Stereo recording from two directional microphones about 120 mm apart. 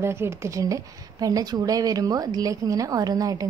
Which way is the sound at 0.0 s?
20° right (ahead or behind).